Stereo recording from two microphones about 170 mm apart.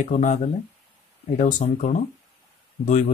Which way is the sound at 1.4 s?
50° left (ahead or behind).